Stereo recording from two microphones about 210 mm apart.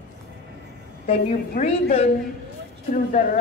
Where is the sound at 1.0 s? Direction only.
35° left (ahead or behind).